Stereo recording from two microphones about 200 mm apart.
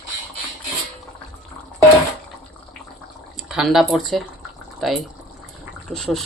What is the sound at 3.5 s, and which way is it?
Speech, centre (ahead or behind).